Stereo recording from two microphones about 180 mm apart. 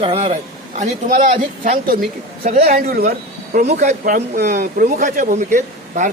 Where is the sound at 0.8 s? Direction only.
45° right (ahead or behind).